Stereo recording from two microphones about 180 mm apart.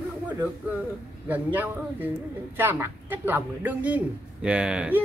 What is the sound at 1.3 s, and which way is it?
A man's voice, 10° right (ahead or behind).